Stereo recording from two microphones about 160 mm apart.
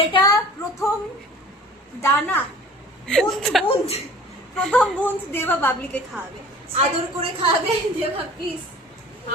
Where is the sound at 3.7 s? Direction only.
40° left (ahead or behind).